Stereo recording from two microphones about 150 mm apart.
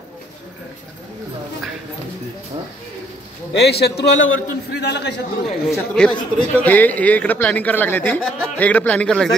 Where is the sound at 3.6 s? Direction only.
90° left.